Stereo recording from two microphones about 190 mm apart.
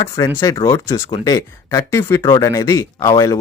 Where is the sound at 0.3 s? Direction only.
20° left (ahead or behind).